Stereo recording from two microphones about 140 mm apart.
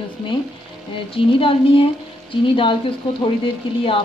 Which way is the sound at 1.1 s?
40° left (ahead or behind).